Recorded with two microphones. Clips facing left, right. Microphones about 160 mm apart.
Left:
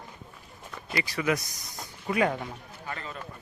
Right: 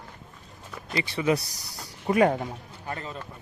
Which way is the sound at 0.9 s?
25° right (ahead or behind).